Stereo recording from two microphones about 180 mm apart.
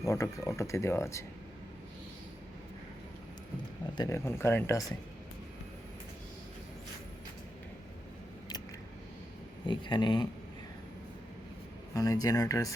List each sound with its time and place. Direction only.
0.0 s speech: 20° left (ahead or behind)
3.9 s speech: 20° left (ahead or behind)
9.6 s speech: 25° left (ahead or behind)
11.9 s speech: 20° left (ahead or behind)